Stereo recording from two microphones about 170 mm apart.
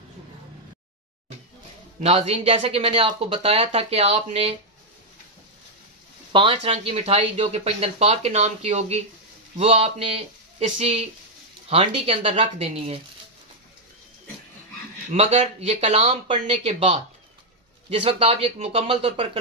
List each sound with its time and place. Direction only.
2.0 s speech: 35° right (ahead or behind)
6.3 s speech: 35° right (ahead or behind)
15.1 s speech: 40° right (ahead or behind)